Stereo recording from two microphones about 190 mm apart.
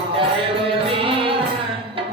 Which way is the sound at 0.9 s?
30° right (ahead or behind).